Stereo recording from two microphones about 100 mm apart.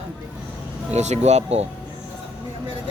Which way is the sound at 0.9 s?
90° right.